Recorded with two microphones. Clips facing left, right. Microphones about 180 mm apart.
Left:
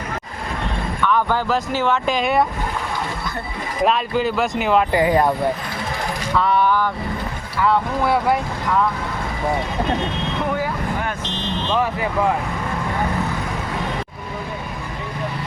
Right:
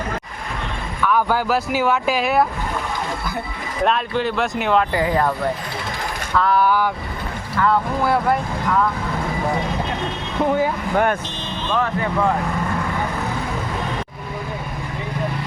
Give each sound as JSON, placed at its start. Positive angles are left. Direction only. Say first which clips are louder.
{"t": 1.0, "sound": "speech", "louder": "right 1 dB", "side_deg": -10}
{"t": 3.8, "sound": "speech", "louder": "left 1 dB", "side_deg": 0}
{"t": 4.9, "sound": "speech", "louder": "left 3 dB", "side_deg": 15}
{"t": 6.3, "sound": "speech", "louder": "right 1 dB", "side_deg": 0}
{"t": 7.5, "sound": "speech", "louder": "even", "side_deg": 0}
{"t": 10.9, "sound": "speech", "louder": "right 7 dB", "side_deg": -55}
{"t": 11.7, "sound": "speech", "louder": "even", "side_deg": 10}